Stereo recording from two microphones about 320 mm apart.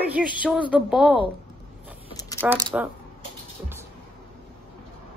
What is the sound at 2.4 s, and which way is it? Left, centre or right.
Speech, centre.